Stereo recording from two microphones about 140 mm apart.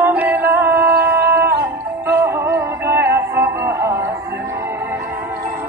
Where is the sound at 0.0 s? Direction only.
10° right (ahead or behind).